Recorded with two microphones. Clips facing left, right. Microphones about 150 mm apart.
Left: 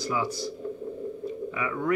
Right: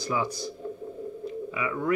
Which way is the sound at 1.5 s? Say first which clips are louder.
Right 1 dB; 10° right (ahead or behind).